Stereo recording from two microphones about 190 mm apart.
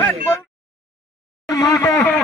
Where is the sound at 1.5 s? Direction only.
20° left (ahead or behind).